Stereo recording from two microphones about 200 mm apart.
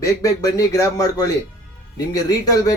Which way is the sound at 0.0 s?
15° left (ahead or behind).